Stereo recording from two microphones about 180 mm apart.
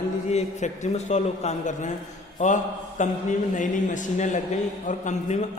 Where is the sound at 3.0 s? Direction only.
45° left (ahead or behind).